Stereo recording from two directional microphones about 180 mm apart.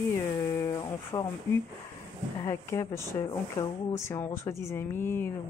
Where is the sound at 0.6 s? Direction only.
20° left (ahead or behind).